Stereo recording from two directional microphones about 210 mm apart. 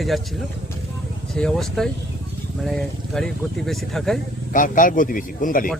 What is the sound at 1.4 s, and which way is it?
Speech, centre (ahead or behind).